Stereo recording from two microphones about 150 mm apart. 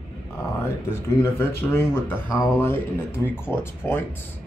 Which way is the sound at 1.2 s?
15° left (ahead or behind).